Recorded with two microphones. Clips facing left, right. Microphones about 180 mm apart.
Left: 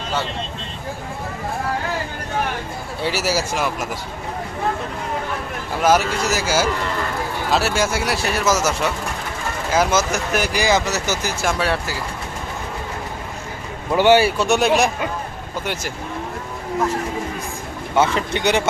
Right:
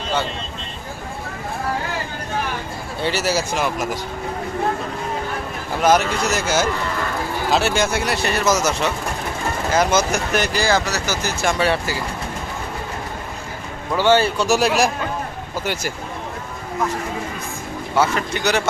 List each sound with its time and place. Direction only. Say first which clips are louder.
3.0 s speech: right 1 dB; 5° left (ahead or behind)
5.8 s speech: even; 5° left (ahead or behind); by 11.2 s 20° left (ahead or behind)
11.4 s speech: right 2 dB; centre (ahead or behind)
13.9 s speech: left 2 dB; 15° left (ahead or behind); by 15.9 s centre (ahead or behind)
17.9 s speech: left 1 dB; 25° left (ahead or behind)